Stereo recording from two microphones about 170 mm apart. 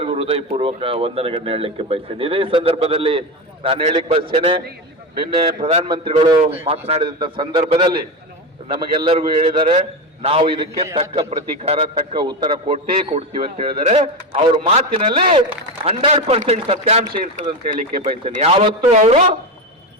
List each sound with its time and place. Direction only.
0.0 s a man's voice: 35° right (ahead or behind)
9.0 s speech: 30° right (ahead or behind)
17.7 s speech: 55° right (ahead or behind)
18.3 s speech: 35° right (ahead or behind)